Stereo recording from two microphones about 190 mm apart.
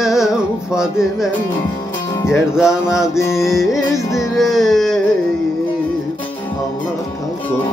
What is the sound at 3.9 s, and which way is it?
Carnatic music, 15° left (ahead or behind).